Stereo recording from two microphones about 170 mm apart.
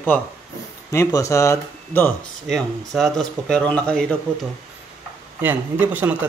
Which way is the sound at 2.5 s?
Centre (ahead or behind).